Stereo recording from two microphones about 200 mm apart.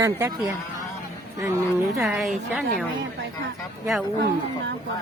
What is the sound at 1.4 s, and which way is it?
Speech, 15° right (ahead or behind).